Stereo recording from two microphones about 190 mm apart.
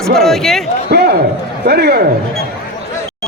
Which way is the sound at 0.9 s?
60° right (ahead or behind).